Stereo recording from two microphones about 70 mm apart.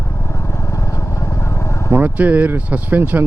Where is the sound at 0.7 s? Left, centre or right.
Left.